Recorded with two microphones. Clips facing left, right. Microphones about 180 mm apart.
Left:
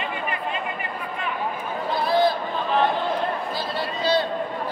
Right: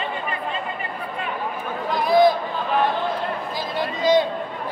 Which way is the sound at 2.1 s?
15° right (ahead or behind).